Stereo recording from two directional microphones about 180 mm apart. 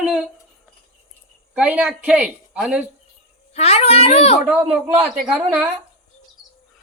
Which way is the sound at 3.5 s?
35° left (ahead or behind).